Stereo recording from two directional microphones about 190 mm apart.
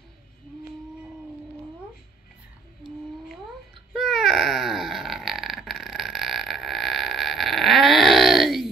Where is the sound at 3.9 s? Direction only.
Centre (ahead or behind).